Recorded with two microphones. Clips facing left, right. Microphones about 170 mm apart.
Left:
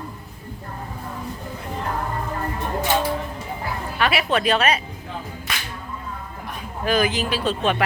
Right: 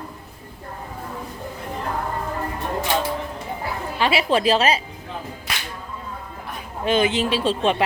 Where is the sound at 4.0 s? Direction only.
30° right (ahead or behind).